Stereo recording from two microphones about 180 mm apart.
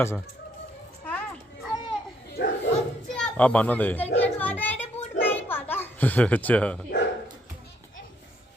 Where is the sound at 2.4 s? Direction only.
70° left (ahead or behind).